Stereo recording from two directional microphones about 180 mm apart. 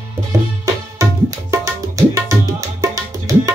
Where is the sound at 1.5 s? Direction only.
15° right (ahead or behind).